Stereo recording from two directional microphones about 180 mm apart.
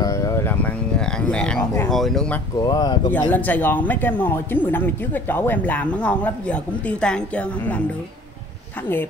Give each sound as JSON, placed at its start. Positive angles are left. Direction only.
{"t": 0.0, "sound": "a sound", "side_deg": 15}
{"t": 2.6, "sound": "speech", "side_deg": 20}
{"t": 3.3, "sound": "speech", "side_deg": 10}